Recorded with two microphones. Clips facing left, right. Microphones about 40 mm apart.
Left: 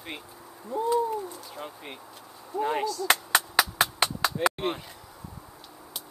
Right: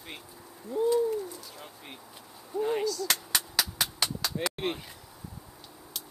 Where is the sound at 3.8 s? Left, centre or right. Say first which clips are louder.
Left 6 dB; left.